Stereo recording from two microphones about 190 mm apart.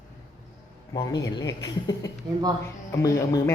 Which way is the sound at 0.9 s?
20° left (ahead or behind).